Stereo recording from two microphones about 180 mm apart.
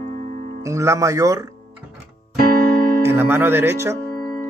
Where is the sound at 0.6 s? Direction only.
15° right (ahead or behind).